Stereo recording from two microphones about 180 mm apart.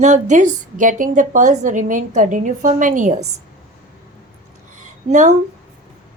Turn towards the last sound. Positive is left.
turn(degrees=-40)  # may be behind; listen again after turning